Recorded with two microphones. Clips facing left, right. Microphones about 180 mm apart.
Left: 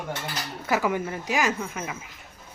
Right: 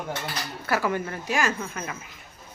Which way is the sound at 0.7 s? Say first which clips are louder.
Left 1 dB; 15° left (ahead or behind).